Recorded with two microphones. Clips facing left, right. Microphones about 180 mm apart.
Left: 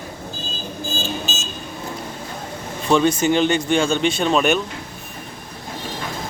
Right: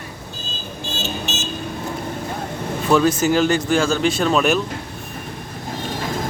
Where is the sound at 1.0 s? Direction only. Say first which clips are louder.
Right 3 dB; 70° right (ahead or behind).